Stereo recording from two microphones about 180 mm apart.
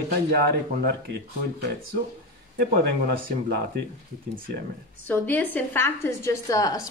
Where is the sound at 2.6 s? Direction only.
55° right (ahead or behind).